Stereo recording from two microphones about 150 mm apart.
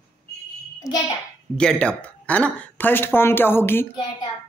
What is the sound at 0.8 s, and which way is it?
Speech, 20° left (ahead or behind).